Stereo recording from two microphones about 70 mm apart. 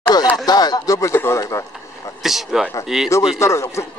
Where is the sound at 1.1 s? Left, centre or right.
Left.